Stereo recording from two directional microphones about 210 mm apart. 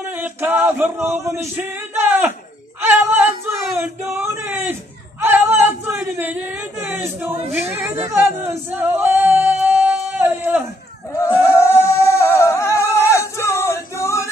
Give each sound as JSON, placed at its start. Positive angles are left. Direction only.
{"t": 0.0, "sound": "a sound", "side_deg": -10}
{"t": 3.8, "sound": "speech", "side_deg": -10}
{"t": 7.7, "sound": "singing", "side_deg": -10}
{"t": 11.1, "sound": "singing", "side_deg": 10}
{"t": 12.9, "sound": "male singing", "side_deg": 15}